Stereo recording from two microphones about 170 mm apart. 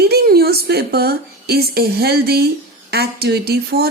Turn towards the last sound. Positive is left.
turn(degrees=-65)  # may be behind; listen again after turning